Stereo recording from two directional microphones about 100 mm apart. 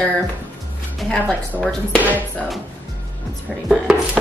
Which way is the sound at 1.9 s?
15° right (ahead or behind).